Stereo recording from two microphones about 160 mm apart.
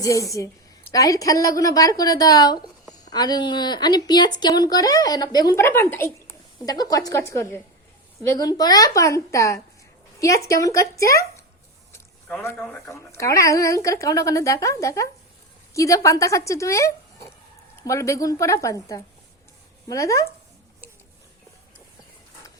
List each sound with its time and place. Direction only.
0.0 s speech: 20° left (ahead or behind)
12.3 s speech: 15° left (ahead or behind)
12.5 s speech: centre (ahead or behind)
12.9 s speech: 20° left (ahead or behind)